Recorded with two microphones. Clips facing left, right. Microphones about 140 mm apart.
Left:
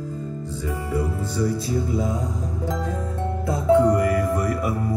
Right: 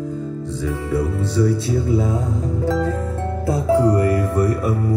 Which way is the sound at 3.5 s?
30° right (ahead or behind).